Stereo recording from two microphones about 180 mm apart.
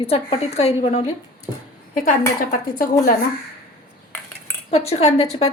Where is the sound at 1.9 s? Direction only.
45° left (ahead or behind).